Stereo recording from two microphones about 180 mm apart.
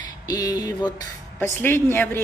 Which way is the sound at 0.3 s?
20° left (ahead or behind).